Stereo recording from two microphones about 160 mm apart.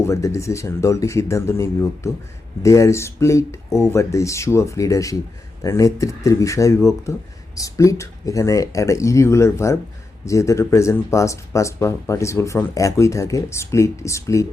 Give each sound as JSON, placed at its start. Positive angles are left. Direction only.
{"t": 0.0, "sound": "speech", "side_deg": 20}